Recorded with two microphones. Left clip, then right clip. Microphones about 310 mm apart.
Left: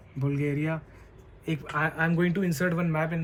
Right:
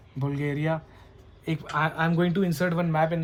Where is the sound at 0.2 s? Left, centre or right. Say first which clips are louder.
Even; right.